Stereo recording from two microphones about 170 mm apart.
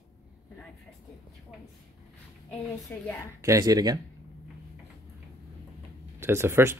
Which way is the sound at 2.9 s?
10° left (ahead or behind).